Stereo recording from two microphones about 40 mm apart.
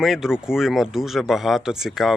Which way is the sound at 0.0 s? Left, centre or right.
Centre.